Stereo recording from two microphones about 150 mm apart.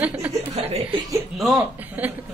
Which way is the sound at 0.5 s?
40° right (ahead or behind).